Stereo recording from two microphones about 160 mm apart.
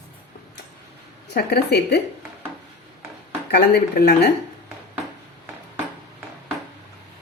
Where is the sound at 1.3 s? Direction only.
90° left.